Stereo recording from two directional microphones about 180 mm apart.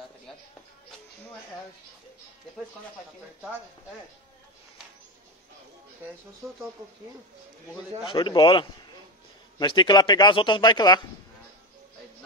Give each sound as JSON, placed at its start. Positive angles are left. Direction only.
{"t": 8.0, "sound": "a man's voice", "side_deg": 25}